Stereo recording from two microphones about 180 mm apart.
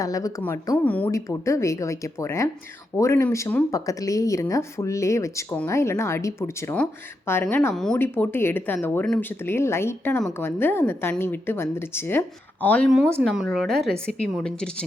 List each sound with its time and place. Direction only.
0.0 s a woman's voice: 20° left (ahead or behind)